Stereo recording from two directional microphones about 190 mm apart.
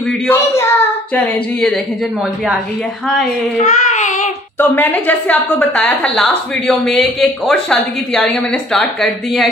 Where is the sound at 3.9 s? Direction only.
40° left (ahead or behind).